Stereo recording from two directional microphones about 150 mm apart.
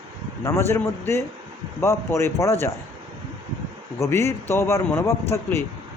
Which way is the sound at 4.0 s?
20° left (ahead or behind).